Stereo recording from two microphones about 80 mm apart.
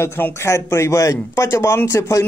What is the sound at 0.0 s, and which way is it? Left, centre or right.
Speech, left.